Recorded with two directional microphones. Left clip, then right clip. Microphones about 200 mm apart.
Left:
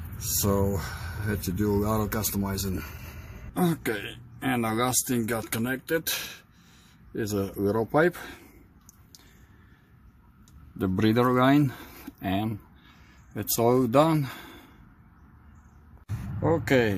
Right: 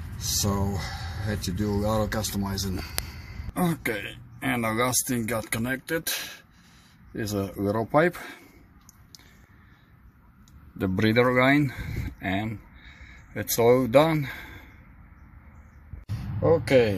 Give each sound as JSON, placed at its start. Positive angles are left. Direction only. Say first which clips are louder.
{"t": 0.4, "sound": "speech", "louder": "left 5 dB", "side_deg": 10}
{"t": 10.8, "sound": "speech", "louder": "right 2 dB", "side_deg": 5}
{"t": 16.4, "sound": "speech", "louder": "right 3 dB", "side_deg": 0}